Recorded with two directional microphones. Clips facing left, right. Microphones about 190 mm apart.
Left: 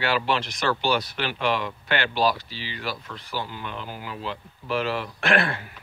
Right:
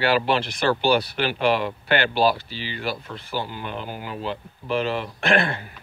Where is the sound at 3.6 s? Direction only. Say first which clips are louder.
Right 3 dB; 40° right (ahead or behind).